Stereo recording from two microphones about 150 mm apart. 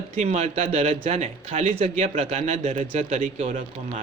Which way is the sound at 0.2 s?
45° right (ahead or behind).